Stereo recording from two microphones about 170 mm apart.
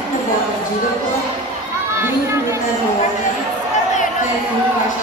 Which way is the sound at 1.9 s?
15° right (ahead or behind).